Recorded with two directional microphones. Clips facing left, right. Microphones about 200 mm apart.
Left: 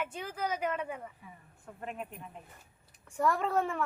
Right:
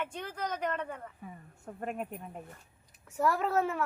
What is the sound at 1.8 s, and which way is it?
Speech, 45° right (ahead or behind).